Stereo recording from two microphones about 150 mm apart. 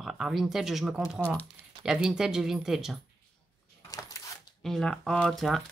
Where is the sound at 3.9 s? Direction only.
20° left (ahead or behind).